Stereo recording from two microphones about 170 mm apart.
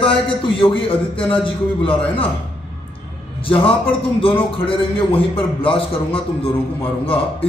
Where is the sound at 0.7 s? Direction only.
30° left (ahead or behind).